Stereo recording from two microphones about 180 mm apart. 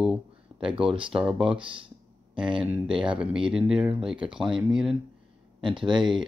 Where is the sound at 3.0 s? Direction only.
5° right (ahead or behind).